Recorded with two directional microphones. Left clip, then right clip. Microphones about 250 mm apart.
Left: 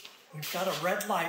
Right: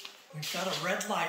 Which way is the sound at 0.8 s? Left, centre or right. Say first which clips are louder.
Left 3 dB; left.